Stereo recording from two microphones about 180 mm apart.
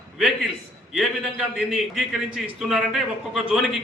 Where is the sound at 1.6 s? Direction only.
5° right (ahead or behind).